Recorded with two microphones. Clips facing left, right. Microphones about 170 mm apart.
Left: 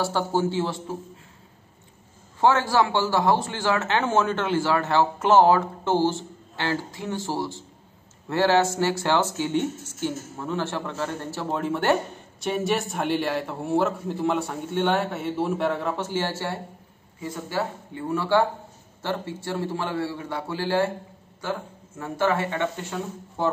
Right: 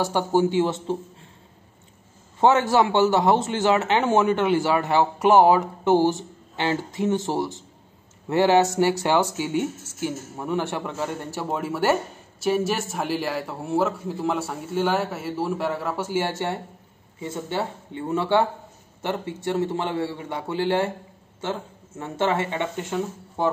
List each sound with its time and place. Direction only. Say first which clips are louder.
0.0 s speech: right 3 dB; 15° right (ahead or behind)
2.4 s a man's voice: right 2 dB; 20° right (ahead or behind)